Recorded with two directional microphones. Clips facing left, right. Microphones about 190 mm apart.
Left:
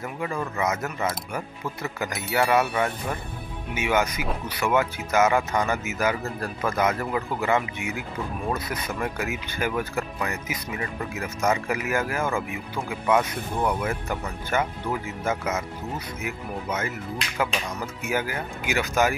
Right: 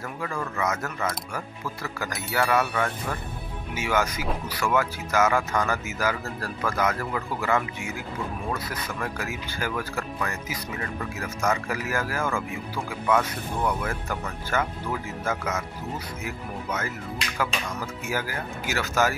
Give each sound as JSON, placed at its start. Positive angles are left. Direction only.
{"t": 0.2, "sound": "speech", "side_deg": 20}
{"t": 18.0, "sound": "speech", "side_deg": 20}